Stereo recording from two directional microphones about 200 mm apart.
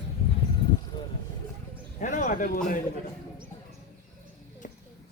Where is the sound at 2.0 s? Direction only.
40° left (ahead or behind).